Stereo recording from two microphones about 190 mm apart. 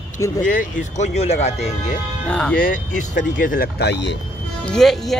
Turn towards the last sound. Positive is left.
turn(degrees=0)  # may be behind; listen again after turning